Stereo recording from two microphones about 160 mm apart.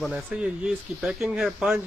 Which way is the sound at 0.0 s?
Centre (ahead or behind).